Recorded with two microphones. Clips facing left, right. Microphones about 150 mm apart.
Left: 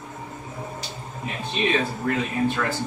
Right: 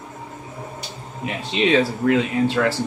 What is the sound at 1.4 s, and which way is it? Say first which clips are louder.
Speech: right 6 dB; 90° right.